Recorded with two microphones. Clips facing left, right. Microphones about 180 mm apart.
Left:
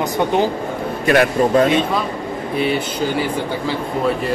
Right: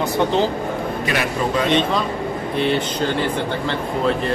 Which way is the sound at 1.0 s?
45° left (ahead or behind).